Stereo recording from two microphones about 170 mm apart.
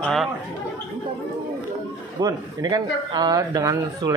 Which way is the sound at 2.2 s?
20° right (ahead or behind).